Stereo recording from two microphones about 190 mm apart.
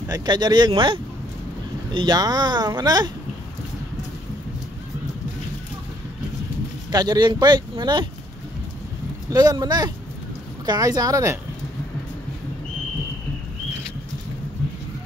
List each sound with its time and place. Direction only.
0.1 s speech: 20° right (ahead or behind)
6.9 s speech: 20° right (ahead or behind)
9.3 s speech: 20° right (ahead or behind)